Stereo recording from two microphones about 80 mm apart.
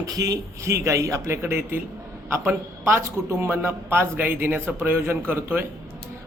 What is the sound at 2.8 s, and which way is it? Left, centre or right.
A man's voice, right.